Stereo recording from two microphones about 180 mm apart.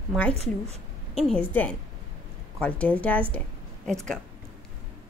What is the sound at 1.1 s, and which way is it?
A woman's voice, centre (ahead or behind).